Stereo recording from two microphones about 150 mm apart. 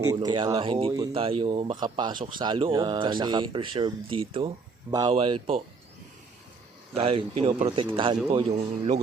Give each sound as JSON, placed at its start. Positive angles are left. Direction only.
{"t": 0.1, "sound": "speech", "side_deg": -25}
{"t": 0.6, "sound": "a man's voice", "side_deg": -40}
{"t": 4.9, "sound": "speech", "side_deg": -25}
{"t": 5.1, "sound": "a man's voice", "side_deg": -35}
{"t": 6.9, "sound": "a man's voice", "side_deg": -40}